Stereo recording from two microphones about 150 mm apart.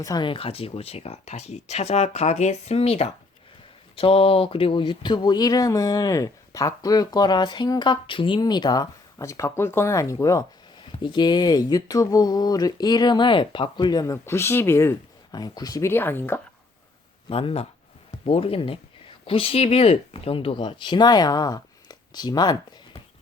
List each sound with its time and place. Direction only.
0.0 s speech: 25° left (ahead or behind)
10.8 s speech: 30° left (ahead or behind); by 14.9 s 15° left (ahead or behind)
15.3 s speech: 25° left (ahead or behind)
17.2 s speech: 35° left (ahead or behind)